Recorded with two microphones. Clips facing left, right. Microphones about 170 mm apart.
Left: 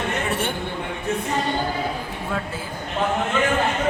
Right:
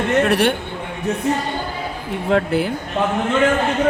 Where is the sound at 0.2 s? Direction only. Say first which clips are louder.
Right 9 dB; 75° right (ahead or behind).